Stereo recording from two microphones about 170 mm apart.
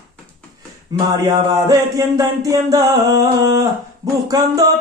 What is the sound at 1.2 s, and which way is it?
Speech, 25° right (ahead or behind).